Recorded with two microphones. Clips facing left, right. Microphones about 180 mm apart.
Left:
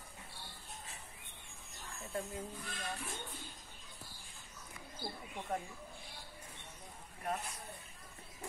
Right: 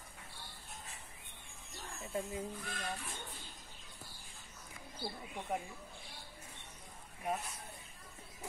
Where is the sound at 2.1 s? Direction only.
5° right (ahead or behind).